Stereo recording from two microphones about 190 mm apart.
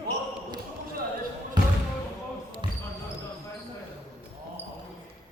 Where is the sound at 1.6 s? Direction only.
25° right (ahead or behind).